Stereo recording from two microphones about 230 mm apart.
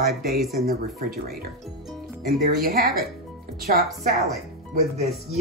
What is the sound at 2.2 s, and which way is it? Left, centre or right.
Speech, right.